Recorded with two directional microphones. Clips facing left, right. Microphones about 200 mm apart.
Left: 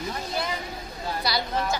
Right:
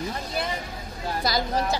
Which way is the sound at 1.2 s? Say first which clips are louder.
Right 3 dB; 45° right (ahead or behind).